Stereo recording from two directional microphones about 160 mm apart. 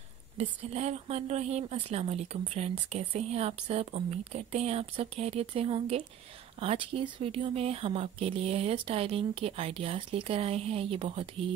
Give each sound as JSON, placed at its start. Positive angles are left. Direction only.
{"t": 0.4, "sound": "speech", "side_deg": -45}